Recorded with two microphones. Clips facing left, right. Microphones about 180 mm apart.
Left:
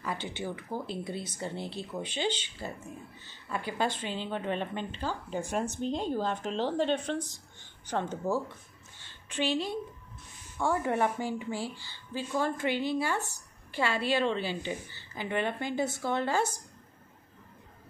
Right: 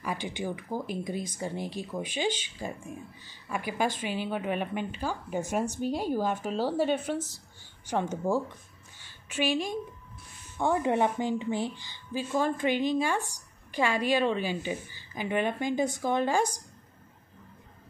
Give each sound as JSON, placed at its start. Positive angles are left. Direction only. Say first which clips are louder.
{"t": 0.0, "sound": "a woman's voice", "louder": "right 2 dB", "side_deg": -10}
{"t": 9.0, "sound": "a sound", "louder": "right 2 dB", "side_deg": -10}
{"t": 10.6, "sound": "a woman's voice", "louder": "right 3 dB", "side_deg": -20}